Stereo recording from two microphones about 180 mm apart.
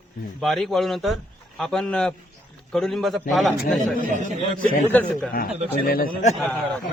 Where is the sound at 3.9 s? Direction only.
45° right (ahead or behind).